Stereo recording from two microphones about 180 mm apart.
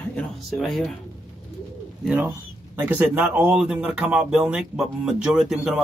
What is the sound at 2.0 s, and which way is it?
Speech, 10° right (ahead or behind).